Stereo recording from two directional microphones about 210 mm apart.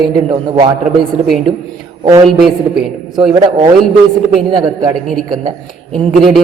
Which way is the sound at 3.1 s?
25° right (ahead or behind).